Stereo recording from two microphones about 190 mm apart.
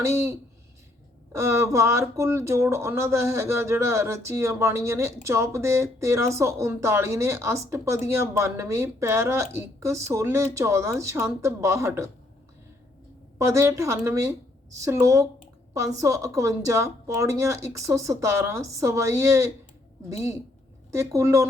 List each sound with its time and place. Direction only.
0.0 s speech: 15° right (ahead or behind)
13.4 s speech: 15° right (ahead or behind)